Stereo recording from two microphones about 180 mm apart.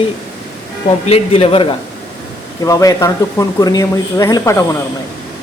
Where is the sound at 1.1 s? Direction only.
35° left (ahead or behind).